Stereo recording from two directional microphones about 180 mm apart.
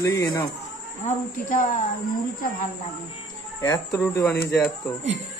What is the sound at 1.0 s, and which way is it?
Speech, 45° left (ahead or behind).